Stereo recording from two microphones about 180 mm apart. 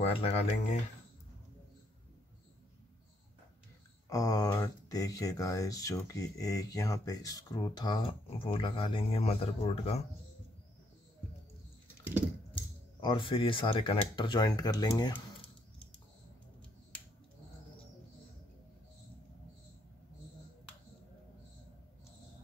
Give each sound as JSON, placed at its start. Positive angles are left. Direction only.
{"t": 0.0, "sound": "speech", "side_deg": 35}
{"t": 4.1, "sound": "speech", "side_deg": 20}
{"t": 13.0, "sound": "speech", "side_deg": 30}